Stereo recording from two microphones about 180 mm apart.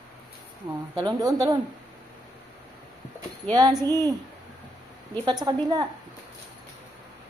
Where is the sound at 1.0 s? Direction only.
20° right (ahead or behind).